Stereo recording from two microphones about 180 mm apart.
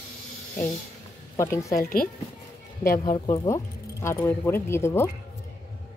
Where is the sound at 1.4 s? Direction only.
15° left (ahead or behind).